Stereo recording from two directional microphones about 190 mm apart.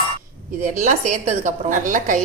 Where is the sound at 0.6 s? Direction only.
45° right (ahead or behind).